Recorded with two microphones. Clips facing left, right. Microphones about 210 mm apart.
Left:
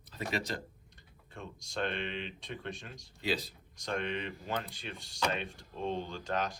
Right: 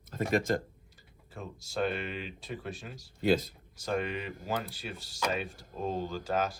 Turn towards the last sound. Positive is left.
turn(degrees=-5)  # may be behind; listen again after turning